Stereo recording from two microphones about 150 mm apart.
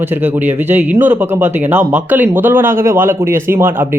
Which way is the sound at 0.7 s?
10° right (ahead or behind).